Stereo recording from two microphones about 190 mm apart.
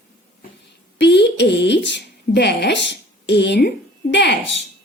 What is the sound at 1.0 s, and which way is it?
Speech, 65° left (ahead or behind).